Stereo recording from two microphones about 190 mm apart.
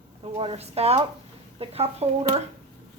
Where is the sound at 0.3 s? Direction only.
30° right (ahead or behind).